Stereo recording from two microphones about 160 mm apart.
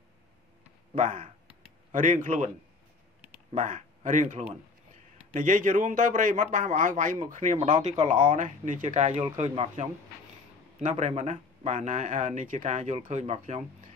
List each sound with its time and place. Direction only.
0.9 s speech: 50° right (ahead or behind)
3.5 s speech: 50° right (ahead or behind)